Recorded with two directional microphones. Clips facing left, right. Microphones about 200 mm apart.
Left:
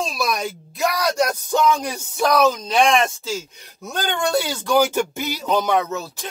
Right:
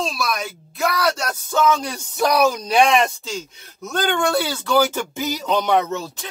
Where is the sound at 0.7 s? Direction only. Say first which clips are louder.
Left 1 dB; 15° left (ahead or behind).